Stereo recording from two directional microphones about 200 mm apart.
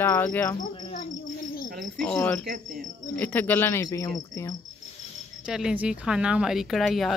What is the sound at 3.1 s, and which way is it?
Speech, 10° left (ahead or behind).